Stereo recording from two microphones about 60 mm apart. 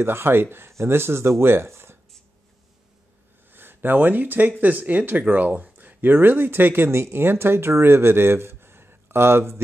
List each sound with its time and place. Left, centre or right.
0.0 s speech: right
3.5 s speech: right